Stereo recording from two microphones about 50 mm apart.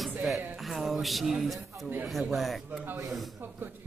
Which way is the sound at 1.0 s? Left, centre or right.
Centre.